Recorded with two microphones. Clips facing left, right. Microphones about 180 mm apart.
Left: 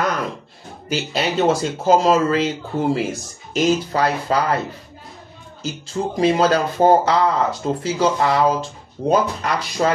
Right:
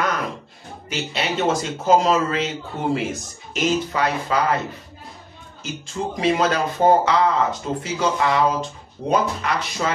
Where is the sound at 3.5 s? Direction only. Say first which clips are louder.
Left 3 dB; 35° left (ahead or behind).